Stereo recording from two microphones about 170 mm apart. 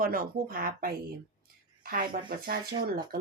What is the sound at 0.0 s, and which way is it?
Speech, 60° right (ahead or behind).